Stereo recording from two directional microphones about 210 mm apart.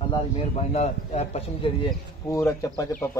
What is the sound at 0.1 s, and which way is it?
A man's voice, 30° left (ahead or behind).